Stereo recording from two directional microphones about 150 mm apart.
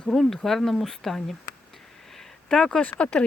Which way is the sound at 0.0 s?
Centre (ahead or behind).